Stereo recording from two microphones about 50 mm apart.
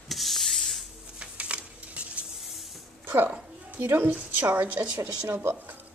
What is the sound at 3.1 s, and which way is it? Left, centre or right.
Speech, right.